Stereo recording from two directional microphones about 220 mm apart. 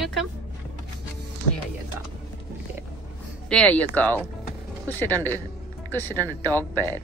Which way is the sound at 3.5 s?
5° left (ahead or behind).